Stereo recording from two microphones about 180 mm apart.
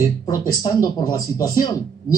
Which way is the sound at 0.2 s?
20° left (ahead or behind).